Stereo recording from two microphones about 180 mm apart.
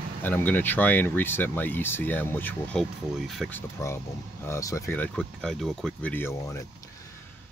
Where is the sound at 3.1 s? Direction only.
Centre (ahead or behind).